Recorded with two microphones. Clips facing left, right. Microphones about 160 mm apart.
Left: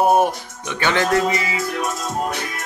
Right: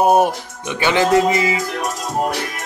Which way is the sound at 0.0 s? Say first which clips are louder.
Right 2 dB; 15° right (ahead or behind).